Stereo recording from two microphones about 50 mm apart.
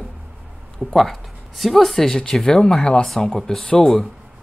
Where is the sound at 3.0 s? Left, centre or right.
Centre.